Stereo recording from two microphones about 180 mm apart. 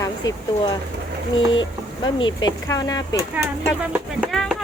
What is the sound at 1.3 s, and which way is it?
Speech, 90° left.